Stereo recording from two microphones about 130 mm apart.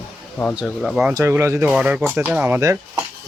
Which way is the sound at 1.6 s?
10° right (ahead or behind).